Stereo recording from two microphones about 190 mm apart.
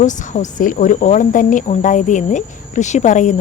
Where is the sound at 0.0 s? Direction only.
40° left (ahead or behind).